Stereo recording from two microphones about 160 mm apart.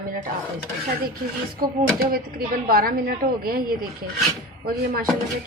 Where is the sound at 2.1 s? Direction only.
65° right (ahead or behind).